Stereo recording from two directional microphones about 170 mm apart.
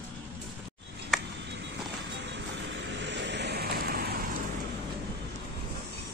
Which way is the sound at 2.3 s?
90° right.